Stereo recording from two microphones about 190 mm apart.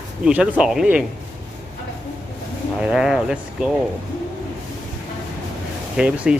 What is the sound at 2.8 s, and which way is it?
Speech, 5° right (ahead or behind).